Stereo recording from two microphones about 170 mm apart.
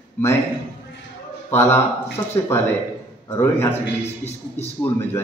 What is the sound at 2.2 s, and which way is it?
Speech, 20° left (ahead or behind).